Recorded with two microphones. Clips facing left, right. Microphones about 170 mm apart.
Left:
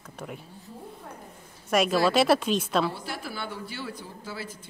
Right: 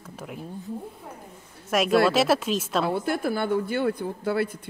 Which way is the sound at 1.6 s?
Centre (ahead or behind).